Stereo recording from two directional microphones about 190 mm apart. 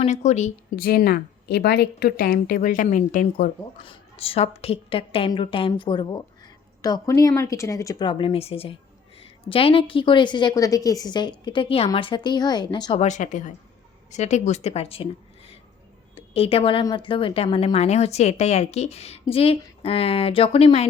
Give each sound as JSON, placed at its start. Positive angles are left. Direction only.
{"t": 0.0, "sound": "a woman's voice", "side_deg": 35}
{"t": 0.8, "sound": "speech", "side_deg": 55}
{"t": 3.8, "sound": "a woman's voice", "side_deg": 30}
{"t": 13.0, "sound": "a woman's voice", "side_deg": 40}